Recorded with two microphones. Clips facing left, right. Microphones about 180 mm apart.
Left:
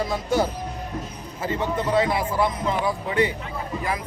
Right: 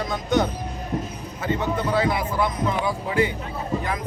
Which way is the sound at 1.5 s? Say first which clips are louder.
Left 2 dB; 25° left (ahead or behind).